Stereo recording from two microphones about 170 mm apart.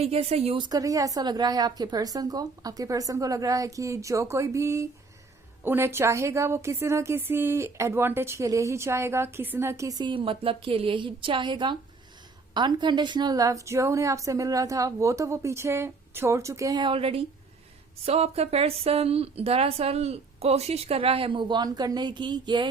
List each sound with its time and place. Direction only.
0.0 s a woman's voice: 35° right (ahead or behind)